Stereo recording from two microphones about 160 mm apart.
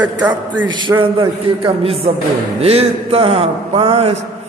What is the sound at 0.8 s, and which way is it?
A man's voice, 30° right (ahead or behind).